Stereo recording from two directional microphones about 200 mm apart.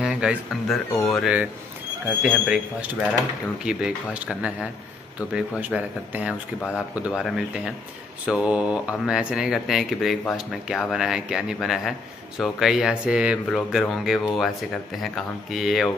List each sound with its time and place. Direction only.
0.0 s speech: 5° right (ahead or behind)